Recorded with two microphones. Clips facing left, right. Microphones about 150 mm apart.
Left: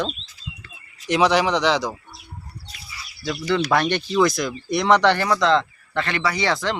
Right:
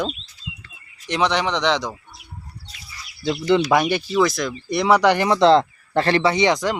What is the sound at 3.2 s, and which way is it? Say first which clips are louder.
Speech: right 4 dB; 20° right (ahead or behind).